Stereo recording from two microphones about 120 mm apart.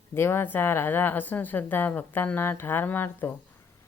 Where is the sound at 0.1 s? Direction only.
20° left (ahead or behind).